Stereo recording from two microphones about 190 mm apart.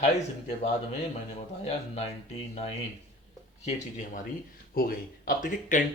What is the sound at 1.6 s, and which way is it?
Speech, 35° left (ahead or behind).